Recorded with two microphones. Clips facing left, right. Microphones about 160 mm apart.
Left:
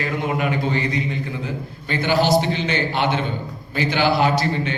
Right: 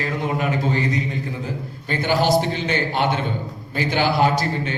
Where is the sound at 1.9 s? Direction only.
45° right (ahead or behind).